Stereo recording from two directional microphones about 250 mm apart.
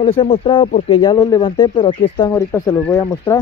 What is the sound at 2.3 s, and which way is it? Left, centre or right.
Speech, centre.